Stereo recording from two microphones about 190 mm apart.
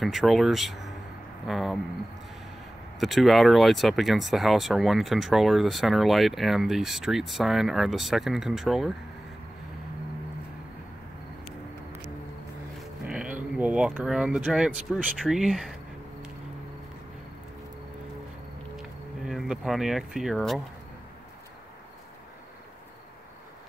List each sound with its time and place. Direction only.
0.0 s speech: centre (ahead or behind)
3.0 s speech: centre (ahead or behind)
12.7 s music: 5° right (ahead or behind)
13.4 s speech: 5° right (ahead or behind)
18.8 s speech: centre (ahead or behind)